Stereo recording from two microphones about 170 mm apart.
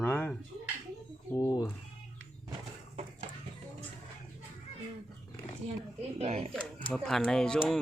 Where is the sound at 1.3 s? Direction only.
25° left (ahead or behind).